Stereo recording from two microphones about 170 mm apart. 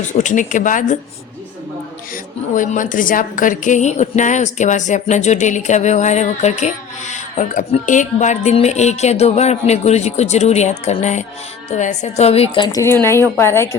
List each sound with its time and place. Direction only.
0.1 s a woman's voice: 45° left (ahead or behind)
2.6 s a woman's voice: 50° left (ahead or behind); by 13.7 s 15° left (ahead or behind)